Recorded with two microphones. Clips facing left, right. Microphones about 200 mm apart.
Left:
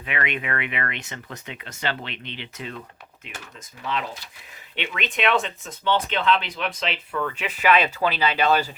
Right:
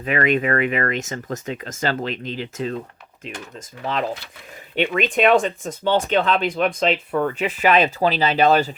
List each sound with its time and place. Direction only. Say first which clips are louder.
0.0 s speech: right 9 dB; 40° right (ahead or behind)
4.7 s speech: right 10 dB; 45° right (ahead or behind)